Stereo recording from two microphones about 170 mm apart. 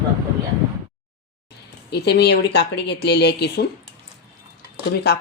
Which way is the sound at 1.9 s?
75° left (ahead or behind).